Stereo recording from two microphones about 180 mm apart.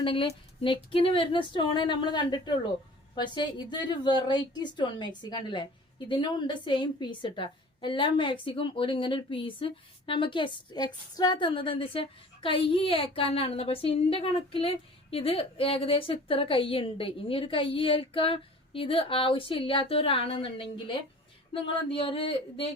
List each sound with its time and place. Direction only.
0.0 s a woman's voice: 30° left (ahead or behind)